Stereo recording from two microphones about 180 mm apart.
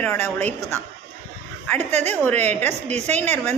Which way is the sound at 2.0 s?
10° left (ahead or behind).